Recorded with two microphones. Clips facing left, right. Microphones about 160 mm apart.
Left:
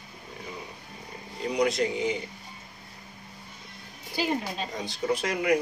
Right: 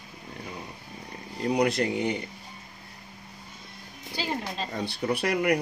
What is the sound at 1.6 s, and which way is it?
Speech, 60° right (ahead or behind).